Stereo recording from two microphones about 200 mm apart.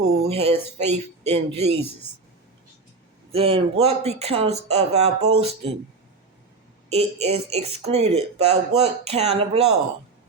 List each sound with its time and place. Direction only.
0.2 s speech: 30° right (ahead or behind)
3.3 s speech: 30° right (ahead or behind)
6.9 s speech: 30° right (ahead or behind)